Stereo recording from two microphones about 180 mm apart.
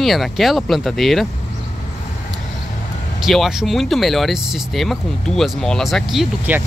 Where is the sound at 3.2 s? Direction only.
Centre (ahead or behind).